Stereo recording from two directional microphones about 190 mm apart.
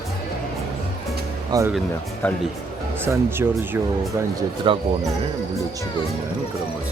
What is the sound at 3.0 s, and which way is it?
Speech, 10° right (ahead or behind).